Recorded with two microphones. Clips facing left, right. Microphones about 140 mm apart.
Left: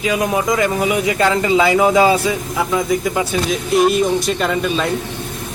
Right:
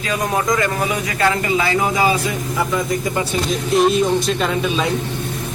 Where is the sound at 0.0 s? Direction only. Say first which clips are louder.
Left 3 dB; 10° left (ahead or behind).